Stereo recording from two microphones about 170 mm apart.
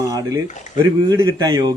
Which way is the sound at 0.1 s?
20° right (ahead or behind).